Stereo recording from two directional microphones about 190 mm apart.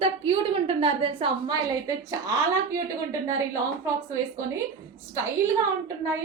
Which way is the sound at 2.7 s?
15° right (ahead or behind).